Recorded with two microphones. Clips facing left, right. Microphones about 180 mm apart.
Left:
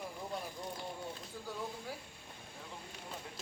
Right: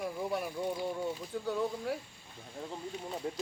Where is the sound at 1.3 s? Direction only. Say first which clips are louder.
Right 10 dB; 75° right (ahead or behind).